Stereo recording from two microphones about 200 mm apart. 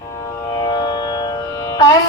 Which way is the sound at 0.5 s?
20° left (ahead or behind).